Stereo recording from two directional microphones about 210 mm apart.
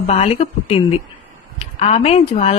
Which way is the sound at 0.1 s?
30° left (ahead or behind).